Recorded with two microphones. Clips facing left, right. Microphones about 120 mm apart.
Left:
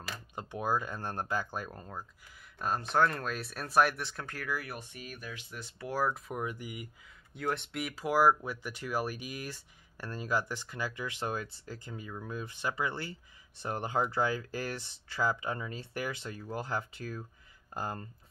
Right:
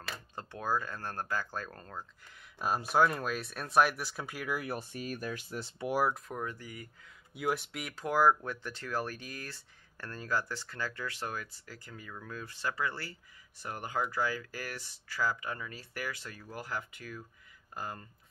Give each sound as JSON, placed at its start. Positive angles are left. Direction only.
{"t": 0.4, "sound": "speech", "side_deg": 15}
{"t": 2.6, "sound": "speech", "side_deg": -10}
{"t": 4.6, "sound": "speech", "side_deg": -35}
{"t": 5.9, "sound": "speech", "side_deg": -10}
{"t": 6.1, "sound": "speech", "side_deg": 0}
{"t": 6.4, "sound": "speech", "side_deg": 15}
{"t": 7.3, "sound": "speech", "side_deg": -5}